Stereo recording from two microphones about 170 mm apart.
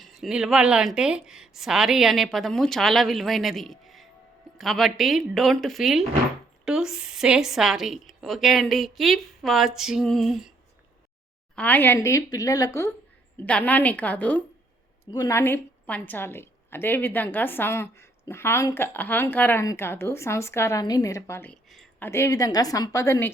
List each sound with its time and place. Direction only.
0.2 s a woman's voice: centre (ahead or behind)
11.5 s a woman's voice: 10° left (ahead or behind)
15.1 s a woman's voice: 20° left (ahead or behind)